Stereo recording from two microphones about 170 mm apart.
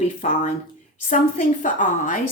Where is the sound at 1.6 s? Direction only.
50° left (ahead or behind).